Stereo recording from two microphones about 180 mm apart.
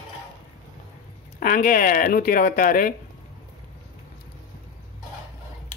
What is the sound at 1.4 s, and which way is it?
Speech, 50° left (ahead or behind).